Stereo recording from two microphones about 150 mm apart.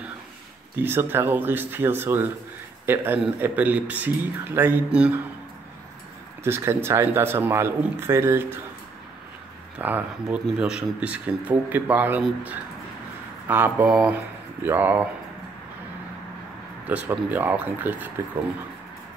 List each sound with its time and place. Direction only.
0.7 s speech: 15° right (ahead or behind)
6.4 s speech: 15° right (ahead or behind)
9.8 s speech: 10° right (ahead or behind)
16.8 s speech: 10° right (ahead or behind)